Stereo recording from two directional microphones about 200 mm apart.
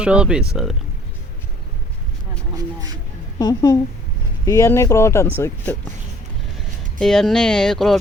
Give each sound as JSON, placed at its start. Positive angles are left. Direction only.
{"t": 0.0, "sound": "speech", "side_deg": -5}
{"t": 3.3, "sound": "speech", "side_deg": 20}
{"t": 7.0, "sound": "speech", "side_deg": 0}